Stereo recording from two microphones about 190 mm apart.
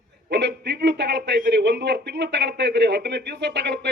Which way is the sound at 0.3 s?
65° right (ahead or behind).